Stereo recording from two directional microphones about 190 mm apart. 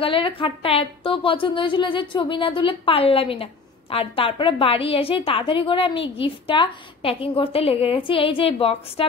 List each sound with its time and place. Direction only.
0.0 s a woman's voice: 30° left (ahead or behind)